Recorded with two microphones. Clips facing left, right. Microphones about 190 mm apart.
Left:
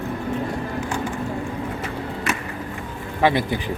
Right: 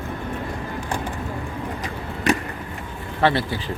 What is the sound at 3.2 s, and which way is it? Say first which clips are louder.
Speech: left 1 dB; 15° left (ahead or behind).